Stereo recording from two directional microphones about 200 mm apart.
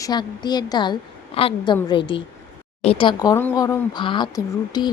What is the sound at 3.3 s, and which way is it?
A woman's voice, 10° left (ahead or behind).